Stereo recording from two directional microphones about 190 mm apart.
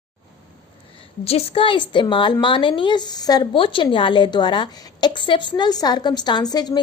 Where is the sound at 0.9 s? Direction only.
30° left (ahead or behind).